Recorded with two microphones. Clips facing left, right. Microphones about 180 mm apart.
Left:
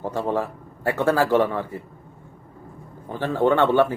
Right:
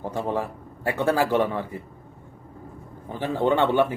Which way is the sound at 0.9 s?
15° right (ahead or behind).